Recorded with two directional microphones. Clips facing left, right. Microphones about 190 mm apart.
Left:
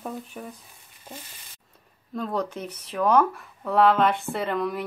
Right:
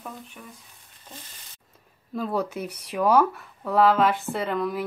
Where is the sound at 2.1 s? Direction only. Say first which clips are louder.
Right 1 dB; 5° right (ahead or behind).